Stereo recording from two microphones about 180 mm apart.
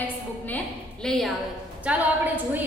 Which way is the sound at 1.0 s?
5° left (ahead or behind).